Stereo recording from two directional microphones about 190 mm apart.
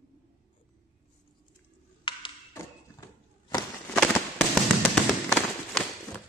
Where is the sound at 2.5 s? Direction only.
20° left (ahead or behind).